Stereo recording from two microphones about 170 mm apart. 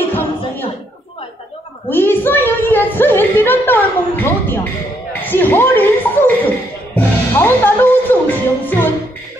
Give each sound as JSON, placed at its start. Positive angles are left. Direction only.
{"t": 1.9, "sound": "a woman's voice", "side_deg": 10}